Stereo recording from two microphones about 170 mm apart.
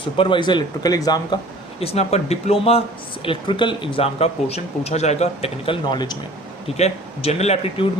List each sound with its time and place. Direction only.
0.0 s speech: 30° left (ahead or behind)
1.8 s speech: 35° left (ahead or behind)
6.7 s speech: 40° left (ahead or behind)